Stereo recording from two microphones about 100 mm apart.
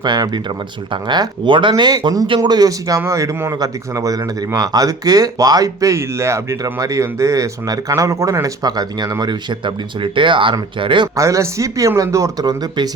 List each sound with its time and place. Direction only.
0.0 s speech: 45° right (ahead or behind)
11.1 s speech: 35° right (ahead or behind)